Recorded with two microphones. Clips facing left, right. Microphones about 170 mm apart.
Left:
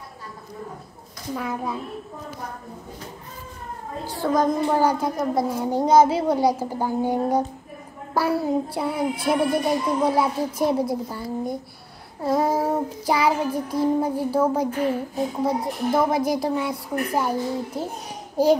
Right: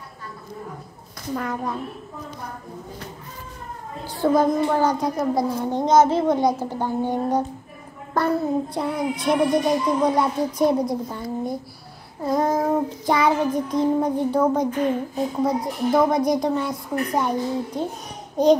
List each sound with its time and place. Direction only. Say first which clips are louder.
1.3 s a woman's voice: right 1 dB; 5° left (ahead or behind)
4.2 s a child's voice: right 4 dB; 20° right (ahead or behind)
4.7 s child singing: even; 10° left (ahead or behind)
9.2 s a woman's voice: right 3 dB; 5° left (ahead or behind)
12.3 s child singing: right 1 dB; 5° left (ahead or behind)
15.4 s a woman's voice: right 2 dB; 5° left (ahead or behind)
18.4 s child singing: right 2 dB; 5° left (ahead or behind)